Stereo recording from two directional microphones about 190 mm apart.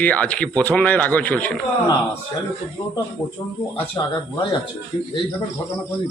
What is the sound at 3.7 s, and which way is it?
Speech, 25° left (ahead or behind).